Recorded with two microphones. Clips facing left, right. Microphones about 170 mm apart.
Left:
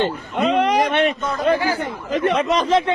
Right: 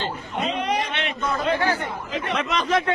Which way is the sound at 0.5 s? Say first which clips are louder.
Left 8 dB; 90° left.